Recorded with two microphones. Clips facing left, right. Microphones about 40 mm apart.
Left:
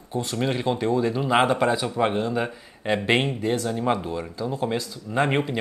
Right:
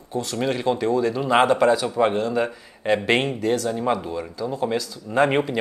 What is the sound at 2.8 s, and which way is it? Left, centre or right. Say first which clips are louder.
Speech: right 2 dB; centre.